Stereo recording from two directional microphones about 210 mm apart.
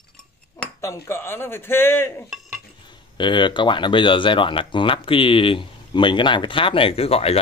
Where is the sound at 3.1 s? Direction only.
20° left (ahead or behind).